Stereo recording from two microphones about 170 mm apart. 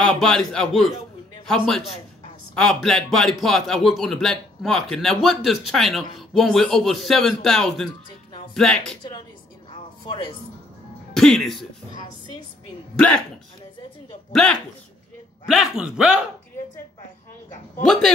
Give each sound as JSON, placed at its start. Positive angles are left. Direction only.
{"t": 0.0, "sound": "a man's voice", "side_deg": 5}
{"t": 9.7, "sound": "music", "side_deg": 30}
{"t": 11.1, "sound": "speech", "side_deg": 0}
{"t": 11.9, "sound": "a woman's voice", "side_deg": 25}
{"t": 12.9, "sound": "speech", "side_deg": 5}
{"t": 14.3, "sound": "speech", "side_deg": 5}